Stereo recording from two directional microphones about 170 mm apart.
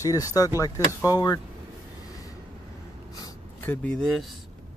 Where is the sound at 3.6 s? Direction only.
10° left (ahead or behind).